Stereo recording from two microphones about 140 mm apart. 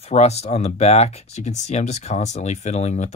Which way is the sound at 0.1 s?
50° left (ahead or behind).